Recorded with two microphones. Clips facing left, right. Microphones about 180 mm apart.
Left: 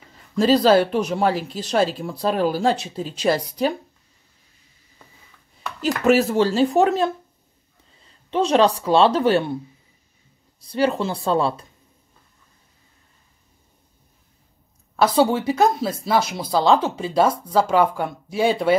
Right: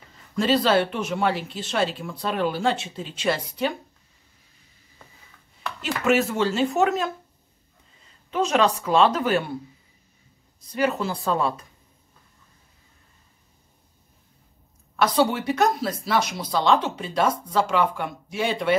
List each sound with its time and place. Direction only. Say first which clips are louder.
0.4 s speech: left 5 dB; 40° left (ahead or behind)
5.8 s speech: left 4 dB; 35° left (ahead or behind)
8.3 s speech: left 4 dB; 30° left (ahead or behind)
10.6 s speech: left 3 dB; 30° left (ahead or behind)
15.0 s speech: left 4 dB; 30° left (ahead or behind)